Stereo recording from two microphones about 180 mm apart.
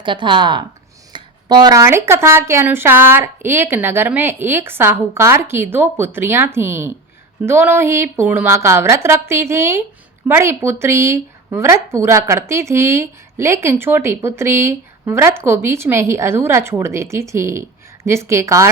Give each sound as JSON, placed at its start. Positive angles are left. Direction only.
{"t": 0.0, "sound": "speech", "side_deg": -25}